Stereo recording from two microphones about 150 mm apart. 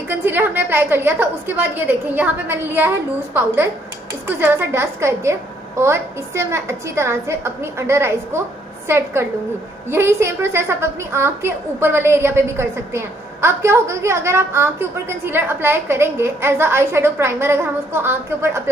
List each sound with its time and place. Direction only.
0.1 s a woman's voice: 15° right (ahead or behind)